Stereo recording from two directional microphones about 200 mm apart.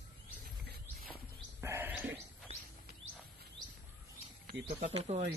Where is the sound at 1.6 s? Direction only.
10° right (ahead or behind).